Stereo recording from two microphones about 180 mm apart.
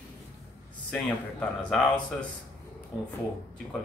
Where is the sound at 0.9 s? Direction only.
5° left (ahead or behind).